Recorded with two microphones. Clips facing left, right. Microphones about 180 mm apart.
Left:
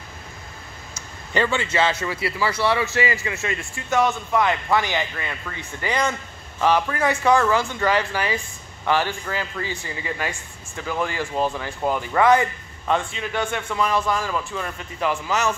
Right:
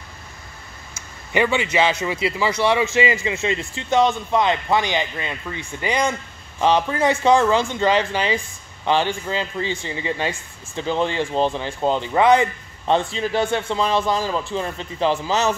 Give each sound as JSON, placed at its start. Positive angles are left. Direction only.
{"t": 1.3, "sound": "speech", "side_deg": -15}